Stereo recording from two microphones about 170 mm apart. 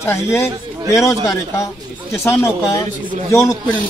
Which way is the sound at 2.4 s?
15° left (ahead or behind).